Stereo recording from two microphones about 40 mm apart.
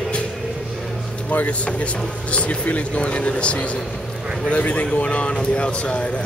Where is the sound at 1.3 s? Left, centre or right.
Left.